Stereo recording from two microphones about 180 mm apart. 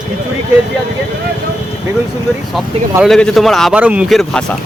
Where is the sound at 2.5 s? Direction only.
Centre (ahead or behind).